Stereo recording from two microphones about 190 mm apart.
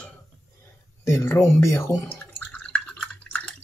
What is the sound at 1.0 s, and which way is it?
Drip, 15° left (ahead or behind).